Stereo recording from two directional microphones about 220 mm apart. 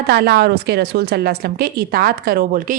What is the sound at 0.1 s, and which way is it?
A woman's voice, 45° right (ahead or behind).